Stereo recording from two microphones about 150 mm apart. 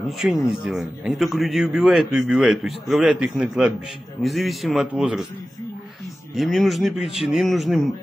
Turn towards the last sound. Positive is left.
turn(degrees=0)  # may be behind; listen again after turning